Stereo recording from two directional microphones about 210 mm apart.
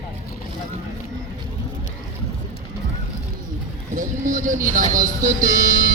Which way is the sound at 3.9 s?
35° right (ahead or behind).